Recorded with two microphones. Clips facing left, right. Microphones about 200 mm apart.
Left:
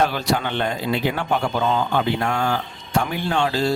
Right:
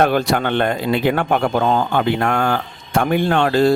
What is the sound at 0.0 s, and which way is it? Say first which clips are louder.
A man's voice: right 5 dB; 55° right (ahead or behind).